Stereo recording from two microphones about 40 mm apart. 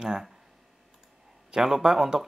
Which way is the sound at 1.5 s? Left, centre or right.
Centre.